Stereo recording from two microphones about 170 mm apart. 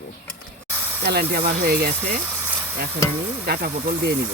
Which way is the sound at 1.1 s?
65° right (ahead or behind).